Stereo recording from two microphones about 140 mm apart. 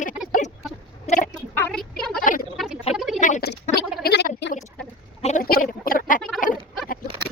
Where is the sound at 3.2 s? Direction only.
65° left (ahead or behind).